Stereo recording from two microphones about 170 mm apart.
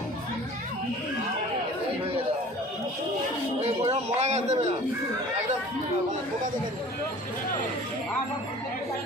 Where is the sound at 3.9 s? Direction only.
40° right (ahead or behind).